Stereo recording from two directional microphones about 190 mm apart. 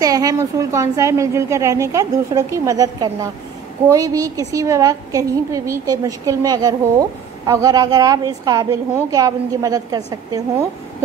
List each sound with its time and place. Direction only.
0.0 s a woman's voice: 20° right (ahead or behind)